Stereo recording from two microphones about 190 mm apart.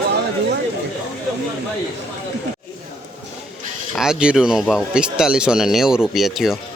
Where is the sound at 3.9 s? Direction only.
5° right (ahead or behind).